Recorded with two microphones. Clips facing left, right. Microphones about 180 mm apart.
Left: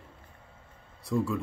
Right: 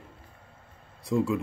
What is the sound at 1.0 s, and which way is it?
Speech, 20° right (ahead or behind).